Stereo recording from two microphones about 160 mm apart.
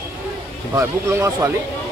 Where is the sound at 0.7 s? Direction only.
20° right (ahead or behind).